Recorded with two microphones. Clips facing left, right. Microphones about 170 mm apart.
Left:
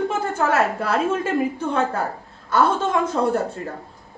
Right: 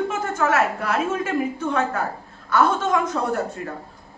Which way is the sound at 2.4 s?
30° left (ahead or behind).